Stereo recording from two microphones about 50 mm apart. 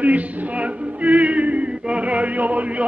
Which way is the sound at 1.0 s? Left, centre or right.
Right.